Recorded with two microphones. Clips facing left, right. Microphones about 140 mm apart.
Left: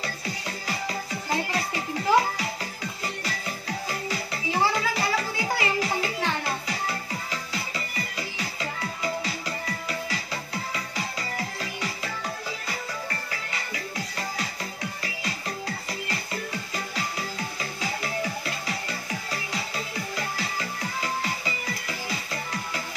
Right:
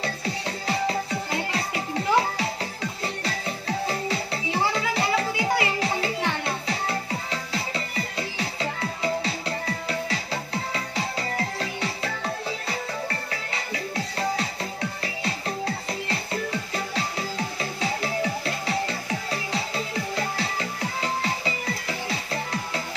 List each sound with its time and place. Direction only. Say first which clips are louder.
0.0 s music: right 4 dB; 30° right (ahead or behind)
13.9 s music: right 7 dB; 30° right (ahead or behind)
17.6 s music: right 4 dB; 30° right (ahead or behind)